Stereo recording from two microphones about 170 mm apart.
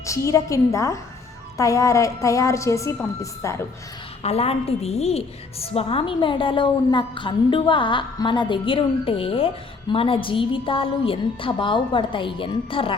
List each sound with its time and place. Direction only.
0.0 s a woman's voice: 20° left (ahead or behind)
4.2 s a woman's voice: 35° left (ahead or behind)